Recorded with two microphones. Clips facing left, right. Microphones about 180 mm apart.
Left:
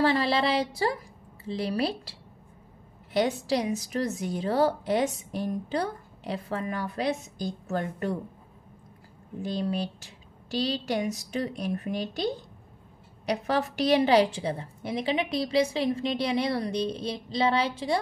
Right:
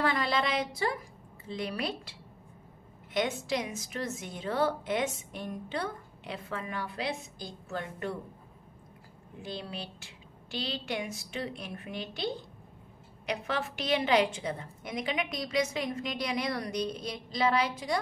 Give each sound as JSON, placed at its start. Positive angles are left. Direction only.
{"t": 0.0, "sound": "a woman's voice", "side_deg": 30}
{"t": 9.4, "sound": "a woman's voice", "side_deg": 45}